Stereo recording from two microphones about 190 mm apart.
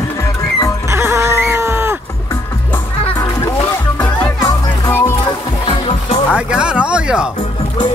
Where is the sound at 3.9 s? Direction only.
5° left (ahead or behind).